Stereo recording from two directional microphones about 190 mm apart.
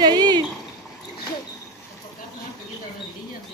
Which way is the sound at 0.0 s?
20° right (ahead or behind).